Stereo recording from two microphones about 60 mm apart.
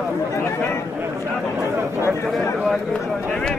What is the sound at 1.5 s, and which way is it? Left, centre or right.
Chatter, right.